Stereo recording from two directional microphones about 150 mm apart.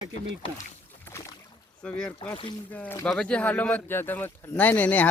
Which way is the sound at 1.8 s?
5° left (ahead or behind).